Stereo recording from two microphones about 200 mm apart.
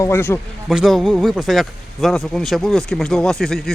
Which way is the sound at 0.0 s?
10° left (ahead or behind).